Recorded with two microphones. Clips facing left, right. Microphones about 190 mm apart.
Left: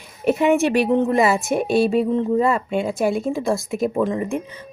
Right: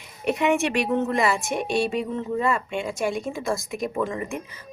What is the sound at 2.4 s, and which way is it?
Speech, 35° left (ahead or behind).